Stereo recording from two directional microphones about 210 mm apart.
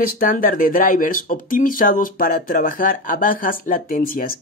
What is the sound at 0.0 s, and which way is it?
Speech, 40° left (ahead or behind).